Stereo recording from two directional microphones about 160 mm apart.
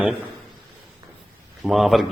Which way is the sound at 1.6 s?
Centre (ahead or behind).